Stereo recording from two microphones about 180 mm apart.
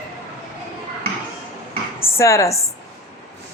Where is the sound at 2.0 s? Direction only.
15° left (ahead or behind).